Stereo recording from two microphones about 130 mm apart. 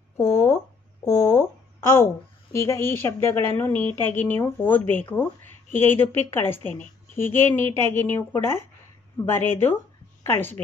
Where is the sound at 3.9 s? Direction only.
15° left (ahead or behind).